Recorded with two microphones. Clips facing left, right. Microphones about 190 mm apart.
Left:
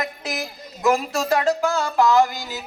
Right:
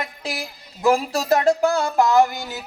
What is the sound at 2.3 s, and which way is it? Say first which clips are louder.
Speech: right 1 dB; 60° right (ahead or behind).